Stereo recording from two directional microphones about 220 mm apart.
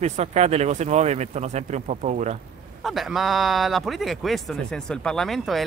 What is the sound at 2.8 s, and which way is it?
Speech, centre (ahead or behind).